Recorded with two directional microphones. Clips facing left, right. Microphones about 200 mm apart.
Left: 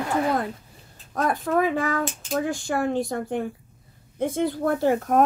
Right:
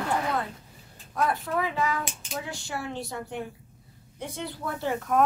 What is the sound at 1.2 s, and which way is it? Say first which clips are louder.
Speech: left 5 dB; 50° left (ahead or behind).